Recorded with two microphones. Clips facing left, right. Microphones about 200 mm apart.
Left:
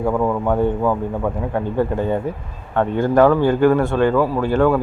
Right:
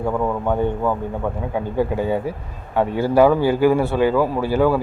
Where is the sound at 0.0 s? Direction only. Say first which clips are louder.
Left 2 dB; 5° left (ahead or behind).